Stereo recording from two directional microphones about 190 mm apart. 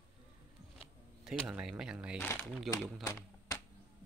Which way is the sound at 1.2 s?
Centre (ahead or behind).